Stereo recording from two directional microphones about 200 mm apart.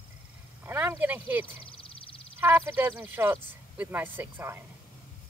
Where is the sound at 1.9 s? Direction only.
25° left (ahead or behind).